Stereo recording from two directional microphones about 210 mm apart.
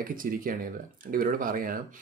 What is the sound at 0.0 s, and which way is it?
Speech, 40° right (ahead or behind).